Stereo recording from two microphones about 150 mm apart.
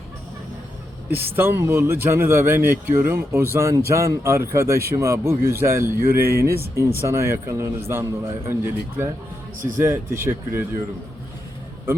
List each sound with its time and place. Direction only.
1.2 s speech: 15° right (ahead or behind)